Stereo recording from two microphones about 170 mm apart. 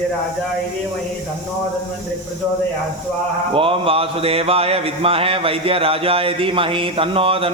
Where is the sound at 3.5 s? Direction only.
35° right (ahead or behind).